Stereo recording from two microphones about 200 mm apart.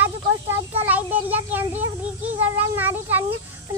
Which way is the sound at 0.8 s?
10° right (ahead or behind).